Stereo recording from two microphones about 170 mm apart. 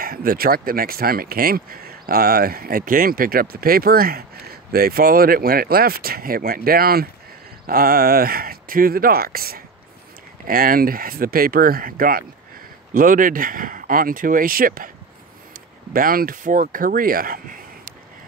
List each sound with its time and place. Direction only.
0.0 s speech: 60° right (ahead or behind)
15.9 s speech: 55° right (ahead or behind)